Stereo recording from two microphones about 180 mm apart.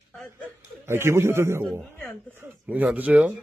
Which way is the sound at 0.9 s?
15° right (ahead or behind).